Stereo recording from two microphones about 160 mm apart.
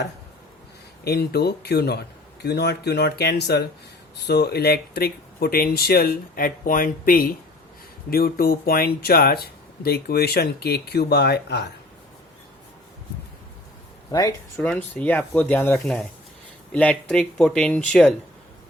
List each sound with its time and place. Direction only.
1.0 s speech: 85° left
14.1 s speech: 20° left (ahead or behind)
14.6 s speech: 5° left (ahead or behind)